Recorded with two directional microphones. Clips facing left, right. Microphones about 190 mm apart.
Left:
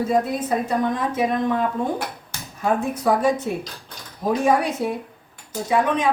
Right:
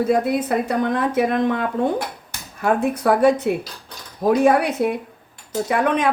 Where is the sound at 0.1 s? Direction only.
65° right (ahead or behind).